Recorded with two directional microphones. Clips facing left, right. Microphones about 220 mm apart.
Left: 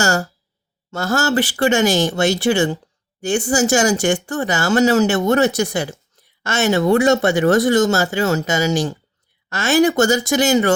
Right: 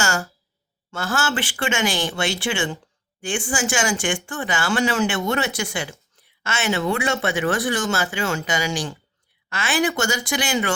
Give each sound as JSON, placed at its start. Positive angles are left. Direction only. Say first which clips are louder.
{"t": 0.0, "sound": "speech", "louder": "left 6 dB", "side_deg": 40}